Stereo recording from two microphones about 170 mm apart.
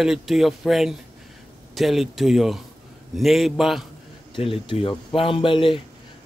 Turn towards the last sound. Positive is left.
turn(degrees=30)  # may be behind; listen again after turning